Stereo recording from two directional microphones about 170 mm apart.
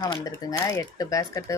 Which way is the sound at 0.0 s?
20° left (ahead or behind).